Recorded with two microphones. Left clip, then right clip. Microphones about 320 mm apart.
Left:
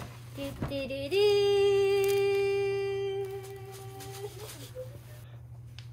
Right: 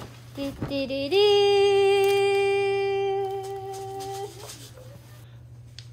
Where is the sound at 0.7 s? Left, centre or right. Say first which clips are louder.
Right 7 dB; right.